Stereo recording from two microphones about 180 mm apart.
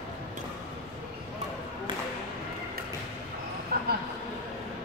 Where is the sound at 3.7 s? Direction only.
60° right (ahead or behind).